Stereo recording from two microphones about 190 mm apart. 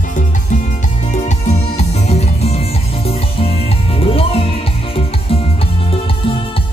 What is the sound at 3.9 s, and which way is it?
Music, 30° left (ahead or behind).